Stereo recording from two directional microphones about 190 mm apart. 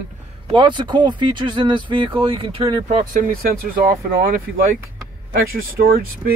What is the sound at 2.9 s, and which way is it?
Speech, 45° right (ahead or behind).